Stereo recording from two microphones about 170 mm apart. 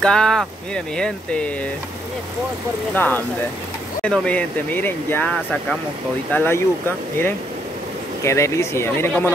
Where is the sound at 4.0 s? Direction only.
5° left (ahead or behind).